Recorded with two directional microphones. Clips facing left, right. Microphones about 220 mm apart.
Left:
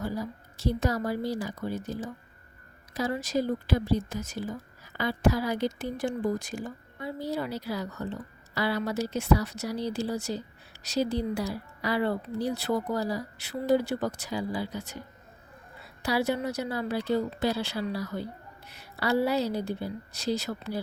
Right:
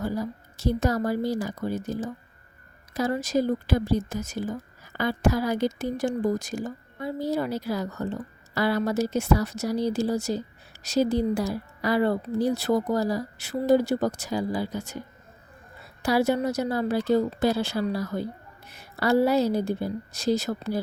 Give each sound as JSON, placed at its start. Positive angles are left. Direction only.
{"t": 0.0, "sound": "a woman's voice", "side_deg": -45}
{"t": 16.0, "sound": "a woman's voice", "side_deg": -45}